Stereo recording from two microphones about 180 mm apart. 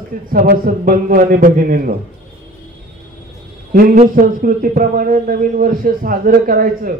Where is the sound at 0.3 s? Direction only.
50° right (ahead or behind).